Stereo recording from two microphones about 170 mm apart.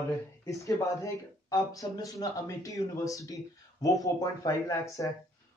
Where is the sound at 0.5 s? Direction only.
20° left (ahead or behind).